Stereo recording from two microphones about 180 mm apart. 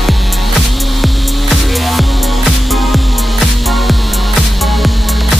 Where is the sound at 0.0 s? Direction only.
Centre (ahead or behind).